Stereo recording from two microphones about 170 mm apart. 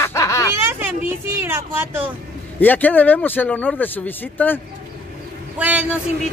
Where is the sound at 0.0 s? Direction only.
15° left (ahead or behind).